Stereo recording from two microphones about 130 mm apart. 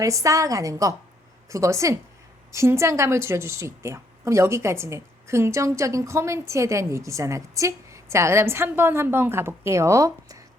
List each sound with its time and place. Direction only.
0.0 s speech: 25° right (ahead or behind)